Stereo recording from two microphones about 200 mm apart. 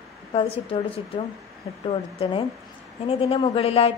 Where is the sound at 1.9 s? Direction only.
25° left (ahead or behind).